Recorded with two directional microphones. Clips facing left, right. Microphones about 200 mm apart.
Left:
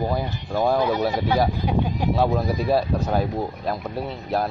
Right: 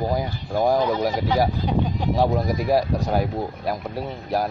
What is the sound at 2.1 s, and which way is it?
Speech, 15° right (ahead or behind).